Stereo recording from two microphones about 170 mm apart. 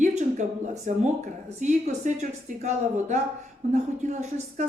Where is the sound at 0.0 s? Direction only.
45° right (ahead or behind).